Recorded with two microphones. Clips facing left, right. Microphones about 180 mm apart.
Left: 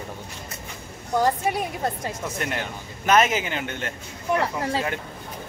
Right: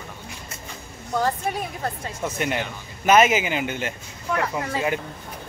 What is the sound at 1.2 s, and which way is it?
Speech, 15° left (ahead or behind).